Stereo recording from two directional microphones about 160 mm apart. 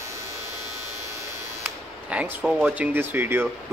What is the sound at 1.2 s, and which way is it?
Speech, 10° right (ahead or behind).